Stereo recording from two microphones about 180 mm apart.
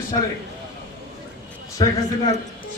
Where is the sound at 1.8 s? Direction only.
20° left (ahead or behind).